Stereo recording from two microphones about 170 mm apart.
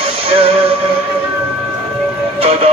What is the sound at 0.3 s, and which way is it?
Music, 35° right (ahead or behind).